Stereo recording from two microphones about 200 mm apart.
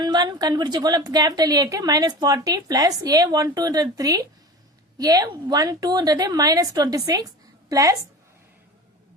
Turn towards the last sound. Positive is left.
turn(degrees=-15)  # may be behind; listen again after turning